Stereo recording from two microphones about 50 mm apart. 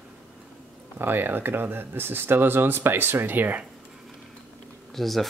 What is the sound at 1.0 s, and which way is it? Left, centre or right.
Speech, right.